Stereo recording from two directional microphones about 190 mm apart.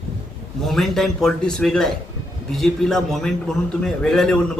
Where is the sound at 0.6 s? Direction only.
Centre (ahead or behind).